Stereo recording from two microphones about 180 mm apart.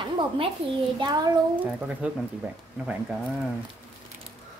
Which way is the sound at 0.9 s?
25° right (ahead or behind).